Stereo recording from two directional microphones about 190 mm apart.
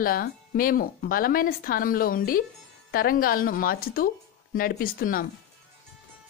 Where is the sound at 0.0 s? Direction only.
50° left (ahead or behind).